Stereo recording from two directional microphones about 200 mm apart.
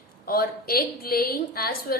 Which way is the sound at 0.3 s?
50° left (ahead or behind).